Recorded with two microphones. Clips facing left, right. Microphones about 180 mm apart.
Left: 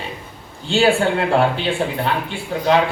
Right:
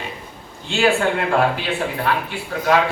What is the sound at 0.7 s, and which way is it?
Speech, 30° left (ahead or behind).